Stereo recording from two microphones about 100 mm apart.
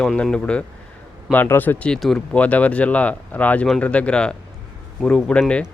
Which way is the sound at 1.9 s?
5° left (ahead or behind).